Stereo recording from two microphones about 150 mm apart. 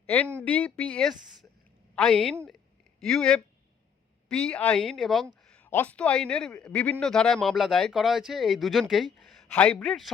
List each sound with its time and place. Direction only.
0.4 s a woman's voice: 10° left (ahead or behind)